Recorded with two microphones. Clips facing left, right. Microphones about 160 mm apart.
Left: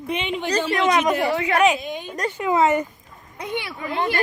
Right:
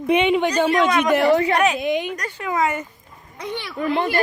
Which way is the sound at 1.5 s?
10° left (ahead or behind).